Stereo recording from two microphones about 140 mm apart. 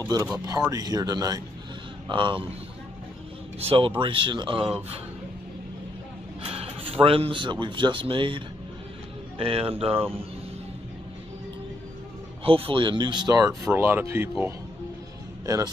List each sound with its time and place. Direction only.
0.0 s speech: 20° right (ahead or behind); by 2.4 s 35° right (ahead or behind)
3.5 s speech: 40° right (ahead or behind)
6.4 s speech: 40° right (ahead or behind)
9.9 s speech: 15° right (ahead or behind)
12.4 s speech: 40° right (ahead or behind); by 14.3 s 15° right (ahead or behind)
15.4 s speech: 25° right (ahead or behind)